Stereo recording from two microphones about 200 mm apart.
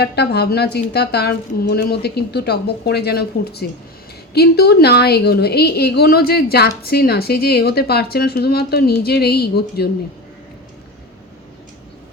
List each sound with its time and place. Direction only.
0.0 s a woman's voice: 55° left (ahead or behind)